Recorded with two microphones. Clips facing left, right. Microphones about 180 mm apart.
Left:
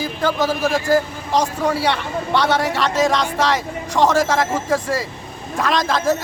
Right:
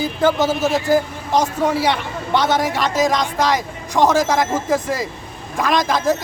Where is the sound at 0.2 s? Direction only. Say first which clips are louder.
Right 2 dB; 20° right (ahead or behind).